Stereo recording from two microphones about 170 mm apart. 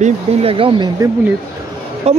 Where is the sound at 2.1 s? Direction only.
40° right (ahead or behind).